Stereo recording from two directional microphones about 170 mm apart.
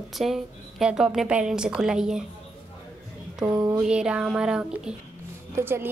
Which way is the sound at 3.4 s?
20° right (ahead or behind).